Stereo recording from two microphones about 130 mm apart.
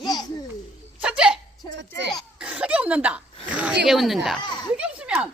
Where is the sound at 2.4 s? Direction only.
10° right (ahead or behind).